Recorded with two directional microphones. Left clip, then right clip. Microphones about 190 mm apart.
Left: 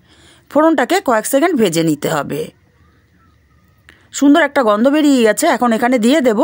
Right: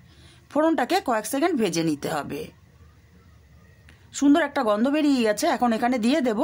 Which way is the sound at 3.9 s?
35° left (ahead or behind).